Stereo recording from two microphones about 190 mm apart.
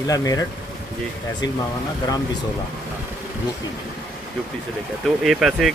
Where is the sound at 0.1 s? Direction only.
20° left (ahead or behind).